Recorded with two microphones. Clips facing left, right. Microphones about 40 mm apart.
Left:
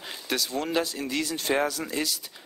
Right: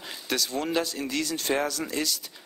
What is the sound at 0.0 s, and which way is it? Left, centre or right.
Speech, centre.